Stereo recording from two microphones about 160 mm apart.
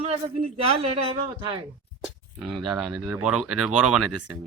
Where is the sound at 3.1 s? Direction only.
5° right (ahead or behind).